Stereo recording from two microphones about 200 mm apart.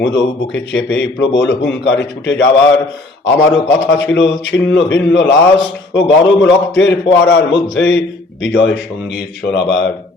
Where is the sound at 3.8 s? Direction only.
65° left (ahead or behind).